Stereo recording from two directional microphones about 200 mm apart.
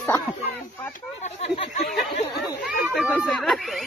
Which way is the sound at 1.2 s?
30° left (ahead or behind).